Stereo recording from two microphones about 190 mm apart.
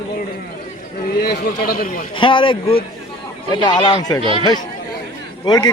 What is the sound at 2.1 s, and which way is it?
Speech, 25° left (ahead or behind).